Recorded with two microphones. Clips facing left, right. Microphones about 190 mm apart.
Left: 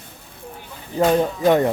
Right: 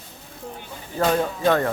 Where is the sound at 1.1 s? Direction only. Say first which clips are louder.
Left 3 dB; 15° left (ahead or behind).